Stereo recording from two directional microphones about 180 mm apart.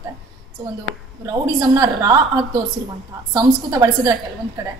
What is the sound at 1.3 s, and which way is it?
Speech, 20° right (ahead or behind).